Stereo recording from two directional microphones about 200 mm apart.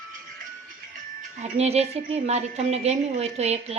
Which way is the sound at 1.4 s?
30° right (ahead or behind).